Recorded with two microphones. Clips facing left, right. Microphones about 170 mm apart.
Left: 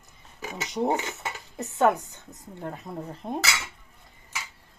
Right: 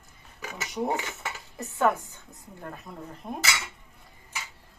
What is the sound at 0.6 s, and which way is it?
Speech, 25° left (ahead or behind).